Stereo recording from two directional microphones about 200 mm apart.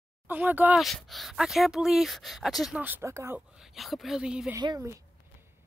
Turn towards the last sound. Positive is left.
turn(degrees=-15)  # may be behind; listen again after turning